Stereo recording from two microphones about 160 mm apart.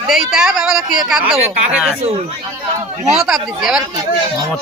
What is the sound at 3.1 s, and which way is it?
Speech, centre (ahead or behind).